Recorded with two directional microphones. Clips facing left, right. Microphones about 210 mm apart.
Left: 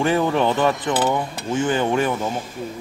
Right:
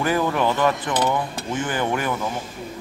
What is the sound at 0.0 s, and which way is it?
Speech, 25° left (ahead or behind).